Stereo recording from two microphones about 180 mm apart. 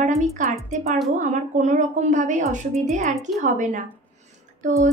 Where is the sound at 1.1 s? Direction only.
45° right (ahead or behind).